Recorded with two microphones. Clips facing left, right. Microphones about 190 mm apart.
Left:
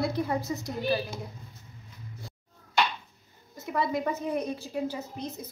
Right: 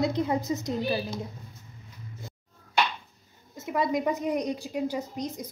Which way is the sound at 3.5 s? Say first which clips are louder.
Right 2 dB; 20° right (ahead or behind).